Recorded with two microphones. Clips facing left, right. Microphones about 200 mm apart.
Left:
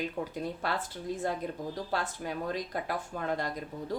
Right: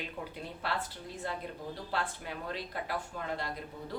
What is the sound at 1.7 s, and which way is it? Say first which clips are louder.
A woman's voice: left 3 dB; 40° left (ahead or behind).